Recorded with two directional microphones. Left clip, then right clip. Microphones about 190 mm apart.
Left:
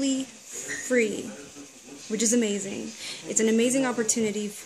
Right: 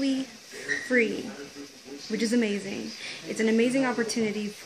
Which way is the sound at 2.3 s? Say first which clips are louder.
Left 2 dB; 15° left (ahead or behind).